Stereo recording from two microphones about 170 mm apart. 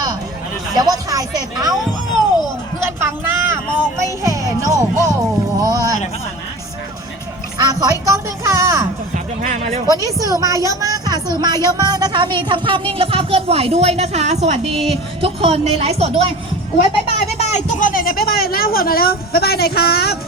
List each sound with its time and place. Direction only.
0.7 s speech: 20° right (ahead or behind)
2.8 s music: 15° right (ahead or behind)
5.5 s a sound: 20° right (ahead or behind)
7.6 s a sound: 25° right (ahead or behind)
9.1 s speech: 45° right (ahead or behind)
9.8 s a woman's voice: 20° right (ahead or behind)
17.3 s speech: 45° left (ahead or behind); by 20.1 s 65° left (ahead or behind)